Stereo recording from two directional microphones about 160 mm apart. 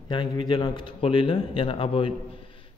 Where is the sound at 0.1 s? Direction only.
30° left (ahead or behind).